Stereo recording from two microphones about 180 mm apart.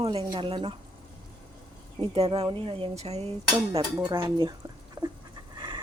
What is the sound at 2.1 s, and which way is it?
Speech, 30° right (ahead or behind).